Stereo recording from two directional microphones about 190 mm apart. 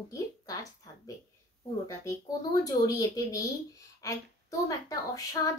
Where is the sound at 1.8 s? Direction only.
15° left (ahead or behind).